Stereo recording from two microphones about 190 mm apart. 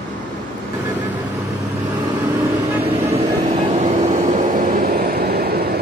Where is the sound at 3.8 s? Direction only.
35° right (ahead or behind).